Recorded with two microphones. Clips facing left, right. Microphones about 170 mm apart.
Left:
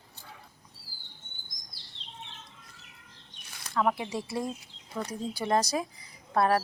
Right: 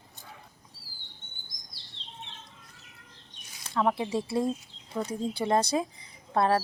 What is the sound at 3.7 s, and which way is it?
A woman's voice, 25° right (ahead or behind).